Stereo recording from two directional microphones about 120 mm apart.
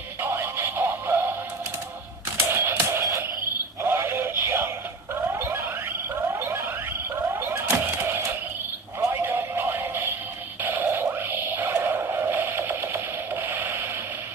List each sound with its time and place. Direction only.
0.2 s synthetic singing: 20° right (ahead or behind)
2.3 s music: 20° right (ahead or behind)
3.8 s synthetic singing: 20° right (ahead or behind)
5.3 s a sound: 20° right (ahead or behind)
9.2 s synthetic singing: 20° right (ahead or behind)
10.6 s a sound: 15° right (ahead or behind)